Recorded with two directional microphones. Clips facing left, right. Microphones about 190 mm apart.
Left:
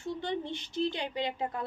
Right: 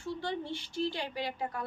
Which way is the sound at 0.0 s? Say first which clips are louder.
Left 2 dB; 20° left (ahead or behind).